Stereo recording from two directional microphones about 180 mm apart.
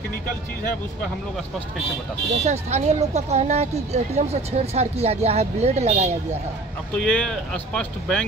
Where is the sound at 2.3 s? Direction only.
40° right (ahead or behind).